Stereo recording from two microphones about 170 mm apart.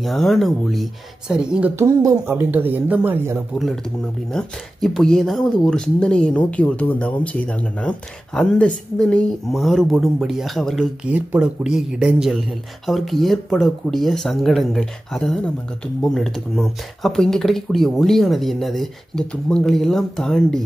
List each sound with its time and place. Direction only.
0.0 s speech: centre (ahead or behind)
1.8 s speech: 15° right (ahead or behind)
4.3 s speech: 5° left (ahead or behind)